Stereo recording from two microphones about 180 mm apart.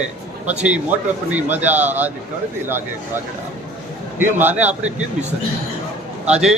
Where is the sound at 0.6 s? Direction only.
5° right (ahead or behind).